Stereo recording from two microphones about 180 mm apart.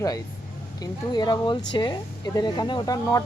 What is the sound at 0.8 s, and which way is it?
Speech, 25° left (ahead or behind).